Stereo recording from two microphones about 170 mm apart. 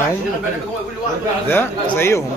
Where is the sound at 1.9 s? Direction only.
15° left (ahead or behind).